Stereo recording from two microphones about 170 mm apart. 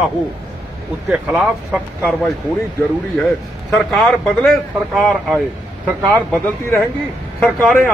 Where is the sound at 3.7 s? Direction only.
Centre (ahead or behind).